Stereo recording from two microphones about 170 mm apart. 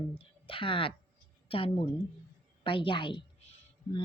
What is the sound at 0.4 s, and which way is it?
A woman's voice, 30° left (ahead or behind).